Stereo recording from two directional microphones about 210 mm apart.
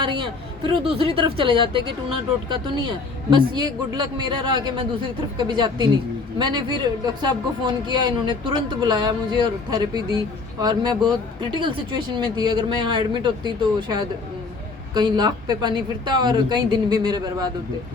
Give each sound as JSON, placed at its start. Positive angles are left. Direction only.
{"t": 0.0, "sound": "speech", "side_deg": -20}